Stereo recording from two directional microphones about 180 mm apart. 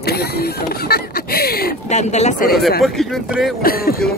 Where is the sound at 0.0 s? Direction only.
60° left (ahead or behind).